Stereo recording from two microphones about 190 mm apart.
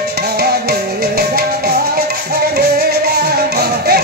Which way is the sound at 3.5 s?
55° right (ahead or behind).